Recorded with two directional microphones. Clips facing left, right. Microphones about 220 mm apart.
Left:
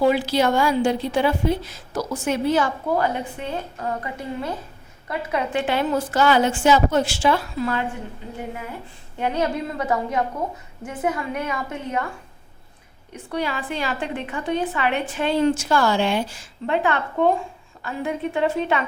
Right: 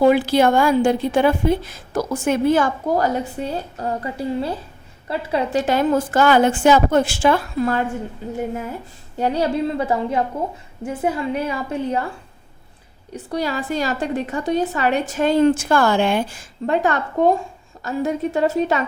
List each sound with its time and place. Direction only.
0.0 s a woman's voice: 50° right (ahead or behind)
9.1 s a woman's voice: 35° right (ahead or behind)
13.3 s a woman's voice: 40° right (ahead or behind)